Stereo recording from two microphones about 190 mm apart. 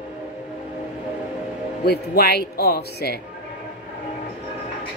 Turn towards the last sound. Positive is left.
turn(degrees=55)  # may be behind; listen again after turning